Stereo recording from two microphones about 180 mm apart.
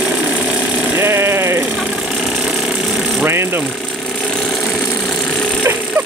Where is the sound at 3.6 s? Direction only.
Centre (ahead or behind).